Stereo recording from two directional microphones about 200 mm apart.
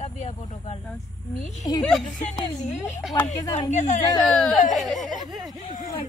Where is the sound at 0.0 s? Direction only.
35° left (ahead or behind).